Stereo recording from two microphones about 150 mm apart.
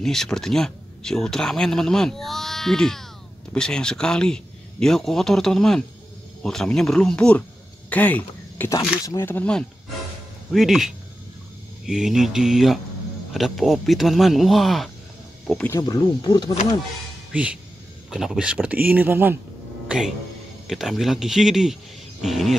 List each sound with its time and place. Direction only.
0.0 s speech: 5° left (ahead or behind)
15.7 s speech: 25° left (ahead or behind)
17.3 s speech: 10° right (ahead or behind)
20.6 s speech: centre (ahead or behind)